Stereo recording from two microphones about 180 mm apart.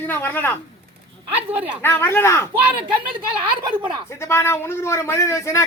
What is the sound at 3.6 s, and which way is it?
Speech, 25° right (ahead or behind).